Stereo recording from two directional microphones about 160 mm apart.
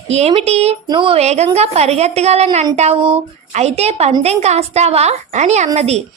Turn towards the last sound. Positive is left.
turn(degrees=-40)  # may be behind; listen again after turning